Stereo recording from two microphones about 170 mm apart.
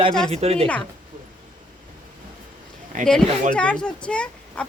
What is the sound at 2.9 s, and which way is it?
Speech, 50° right (ahead or behind).